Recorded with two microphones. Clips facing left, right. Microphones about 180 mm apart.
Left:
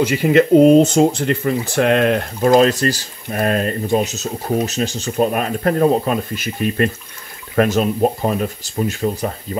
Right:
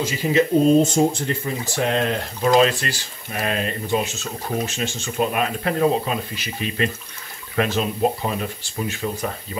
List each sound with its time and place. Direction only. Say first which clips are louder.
0.0 s speech: left 6 dB; 60° left (ahead or behind); by 9.3 s 35° left (ahead or behind)